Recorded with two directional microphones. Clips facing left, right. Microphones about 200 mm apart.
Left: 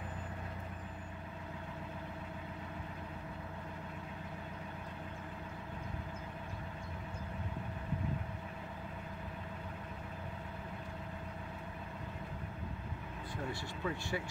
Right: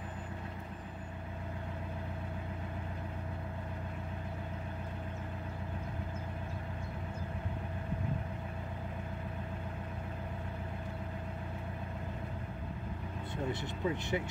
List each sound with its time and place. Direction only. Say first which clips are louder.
13.5 s speech: right 5 dB; 20° right (ahead or behind)